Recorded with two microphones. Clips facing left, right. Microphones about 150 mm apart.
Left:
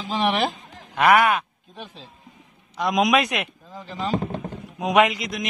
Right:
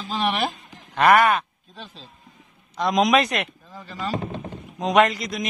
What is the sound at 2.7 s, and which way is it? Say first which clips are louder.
Speech: right 1 dB; centre (ahead or behind).